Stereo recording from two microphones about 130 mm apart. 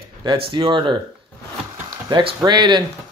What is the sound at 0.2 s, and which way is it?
Speech, 40° right (ahead or behind).